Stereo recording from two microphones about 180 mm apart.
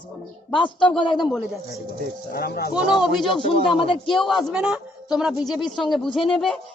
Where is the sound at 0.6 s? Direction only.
5° left (ahead or behind).